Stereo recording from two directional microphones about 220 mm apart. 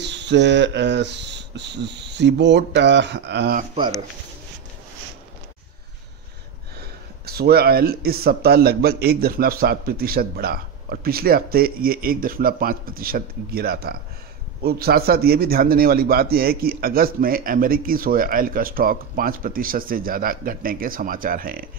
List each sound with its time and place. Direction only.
0.0 s a man's voice: 50° right (ahead or behind)
7.2 s a man's voice: 45° right (ahead or behind)